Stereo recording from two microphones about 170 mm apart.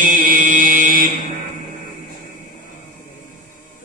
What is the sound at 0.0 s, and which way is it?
Chant, 50° right (ahead or behind).